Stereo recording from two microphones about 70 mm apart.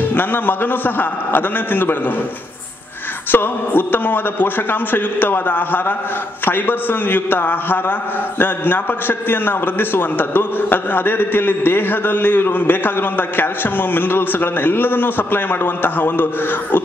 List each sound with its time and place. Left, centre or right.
0.1 s a man's voice: left
3.3 s a man's voice: left